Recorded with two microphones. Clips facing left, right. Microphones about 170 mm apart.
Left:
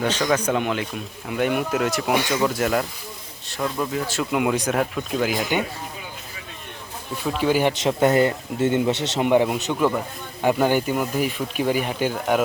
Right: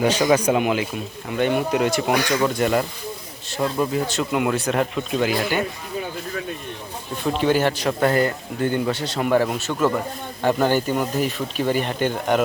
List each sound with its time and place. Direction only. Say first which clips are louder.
0.0 s speech: right 4 dB; 10° right (ahead or behind)
1.3 s speech: right 2 dB; 5° left (ahead or behind)
5.4 s speech: right 1 dB; 15° left (ahead or behind)
7.3 s speech: right 1 dB; 5° left (ahead or behind)
7.7 s speech: left 1 dB; 20° left (ahead or behind); by 12.4 s 5° left (ahead or behind)